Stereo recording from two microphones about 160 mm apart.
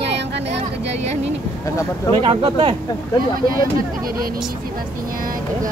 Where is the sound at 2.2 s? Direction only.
35° right (ahead or behind).